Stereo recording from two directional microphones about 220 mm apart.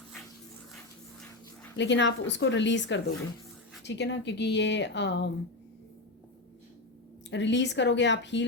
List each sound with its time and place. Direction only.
1.7 s speech: 55° left (ahead or behind)
7.3 s speech: 55° left (ahead or behind)